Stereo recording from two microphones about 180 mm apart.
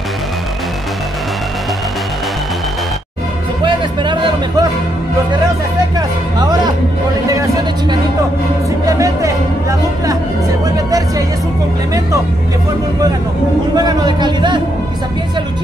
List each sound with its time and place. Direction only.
3.6 s music: 25° right (ahead or behind)
5.9 s music: 20° right (ahead or behind)
7.2 s a sound: 20° right (ahead or behind)
8.8 s music: 20° right (ahead or behind)
13.7 s speech: 25° right (ahead or behind)